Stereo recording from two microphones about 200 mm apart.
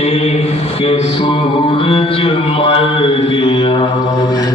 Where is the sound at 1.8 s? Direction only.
30° left (ahead or behind).